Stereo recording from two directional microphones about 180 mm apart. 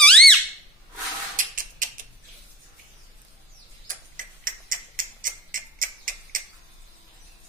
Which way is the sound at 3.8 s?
50° right (ahead or behind).